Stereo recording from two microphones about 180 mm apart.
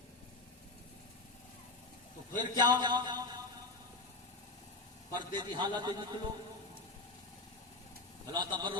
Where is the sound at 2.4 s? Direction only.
25° right (ahead or behind).